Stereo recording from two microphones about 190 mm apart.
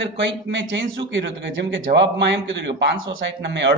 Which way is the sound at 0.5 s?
70° right (ahead or behind).